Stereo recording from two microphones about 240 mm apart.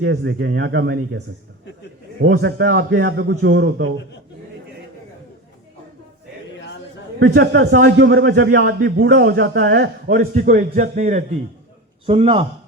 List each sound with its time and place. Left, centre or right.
0.0 s a man's voice: right
2.2 s a man's voice: right
7.5 s a man's voice: right